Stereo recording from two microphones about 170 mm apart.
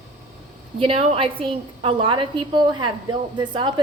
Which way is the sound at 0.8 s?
35° right (ahead or behind).